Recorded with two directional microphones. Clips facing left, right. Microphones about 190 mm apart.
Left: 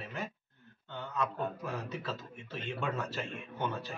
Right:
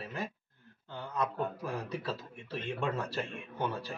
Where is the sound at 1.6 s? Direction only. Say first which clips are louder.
Right 2 dB; 15° right (ahead or behind).